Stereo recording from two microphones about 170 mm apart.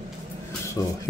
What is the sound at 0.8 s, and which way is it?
Speech, 20° left (ahead or behind).